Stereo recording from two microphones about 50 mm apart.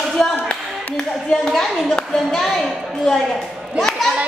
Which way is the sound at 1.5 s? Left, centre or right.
Centre.